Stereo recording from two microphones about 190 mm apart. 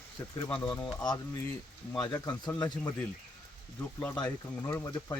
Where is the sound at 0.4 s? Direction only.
10° left (ahead or behind).